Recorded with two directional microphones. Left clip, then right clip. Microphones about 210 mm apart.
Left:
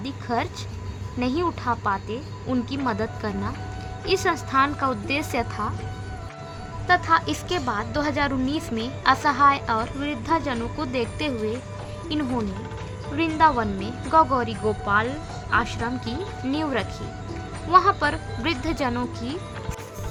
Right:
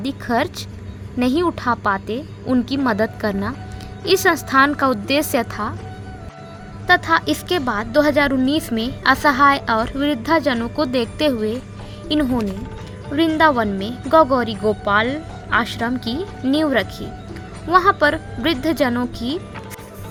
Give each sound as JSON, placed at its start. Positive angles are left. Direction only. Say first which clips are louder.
{"t": 0.0, "sound": "a woman's voice", "louder": "right 6 dB", "side_deg": -20}
{"t": 6.8, "sound": "a woman's voice", "louder": "right 4 dB", "side_deg": -20}